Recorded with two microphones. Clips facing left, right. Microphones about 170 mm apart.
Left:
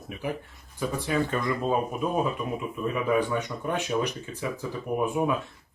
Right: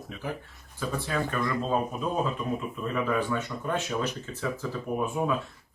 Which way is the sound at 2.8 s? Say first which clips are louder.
Left 4 dB; 15° left (ahead or behind).